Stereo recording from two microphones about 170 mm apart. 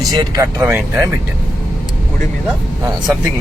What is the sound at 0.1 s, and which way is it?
Speech, 20° right (ahead or behind).